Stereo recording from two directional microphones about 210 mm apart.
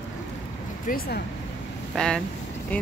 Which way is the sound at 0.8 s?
45° left (ahead or behind).